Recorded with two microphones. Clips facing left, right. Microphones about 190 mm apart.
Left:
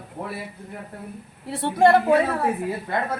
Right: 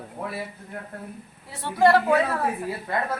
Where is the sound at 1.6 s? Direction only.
25° left (ahead or behind).